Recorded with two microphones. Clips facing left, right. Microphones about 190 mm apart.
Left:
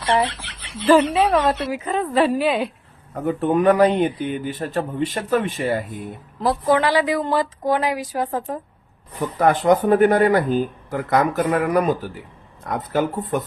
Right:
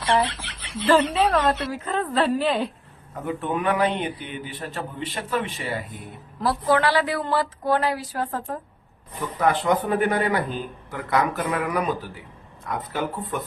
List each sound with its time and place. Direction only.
0.0 s speech: centre (ahead or behind)
1.7 s a woman's voice: 10° left (ahead or behind)
3.2 s a man's voice: 40° left (ahead or behind)
6.4 s a woman's voice: 20° left (ahead or behind)
9.4 s a man's voice: 45° left (ahead or behind)